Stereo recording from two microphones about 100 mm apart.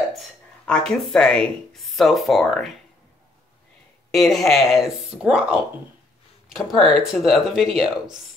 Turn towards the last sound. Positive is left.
turn(degrees=-5)  # may be behind; listen again after turning